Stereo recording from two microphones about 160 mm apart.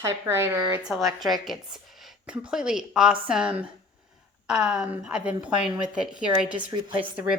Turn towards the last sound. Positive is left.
turn(degrees=-10)  # may be behind; listen again after turning